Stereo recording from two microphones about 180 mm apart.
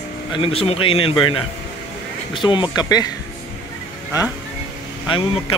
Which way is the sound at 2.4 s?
25° left (ahead or behind).